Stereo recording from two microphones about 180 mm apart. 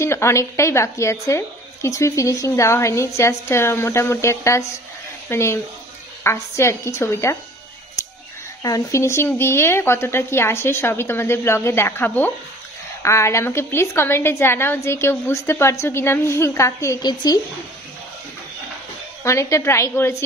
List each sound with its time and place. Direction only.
0.0 s a woman's voice: 15° left (ahead or behind)
8.6 s a woman's voice: 20° left (ahead or behind)
19.2 s a woman's voice: 15° left (ahead or behind)